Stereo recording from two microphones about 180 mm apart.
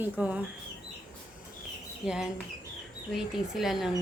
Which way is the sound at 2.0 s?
Centre (ahead or behind).